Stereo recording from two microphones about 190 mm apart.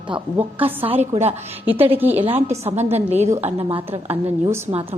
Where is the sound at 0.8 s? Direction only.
30° right (ahead or behind).